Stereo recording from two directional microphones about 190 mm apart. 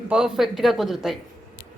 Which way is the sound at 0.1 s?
5° right (ahead or behind).